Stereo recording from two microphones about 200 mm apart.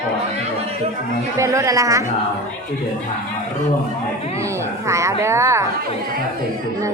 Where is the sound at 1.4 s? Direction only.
15° right (ahead or behind).